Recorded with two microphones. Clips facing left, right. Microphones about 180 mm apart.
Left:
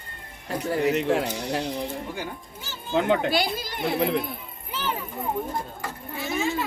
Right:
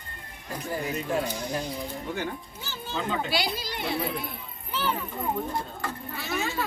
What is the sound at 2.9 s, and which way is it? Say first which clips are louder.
Speech: left 8 dB; 70° left (ahead or behind).